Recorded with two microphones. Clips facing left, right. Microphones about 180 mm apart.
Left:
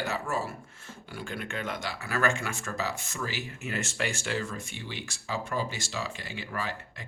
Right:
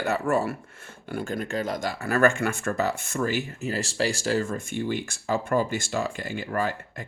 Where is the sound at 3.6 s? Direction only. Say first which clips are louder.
Right 3 dB; 35° right (ahead or behind).